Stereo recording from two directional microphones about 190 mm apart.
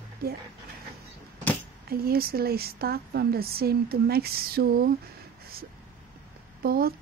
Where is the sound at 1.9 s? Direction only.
50° right (ahead or behind).